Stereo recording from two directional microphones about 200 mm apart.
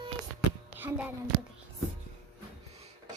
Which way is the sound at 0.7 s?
10° right (ahead or behind).